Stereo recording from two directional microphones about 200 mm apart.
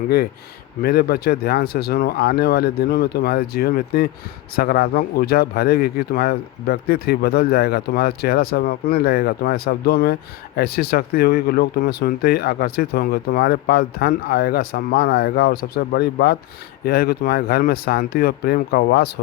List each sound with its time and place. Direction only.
0.8 s speech: 50° left (ahead or behind)